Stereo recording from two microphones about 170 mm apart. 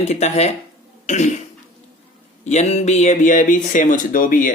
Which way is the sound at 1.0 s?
45° left (ahead or behind).